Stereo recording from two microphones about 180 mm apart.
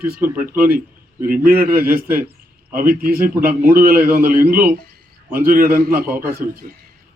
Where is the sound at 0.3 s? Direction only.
50° right (ahead or behind).